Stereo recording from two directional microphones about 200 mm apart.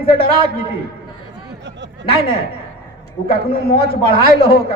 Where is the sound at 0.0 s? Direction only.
30° left (ahead or behind).